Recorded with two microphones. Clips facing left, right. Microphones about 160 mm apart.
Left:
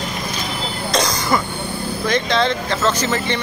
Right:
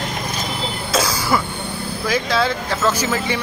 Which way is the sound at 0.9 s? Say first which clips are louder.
Even; 5° right (ahead or behind).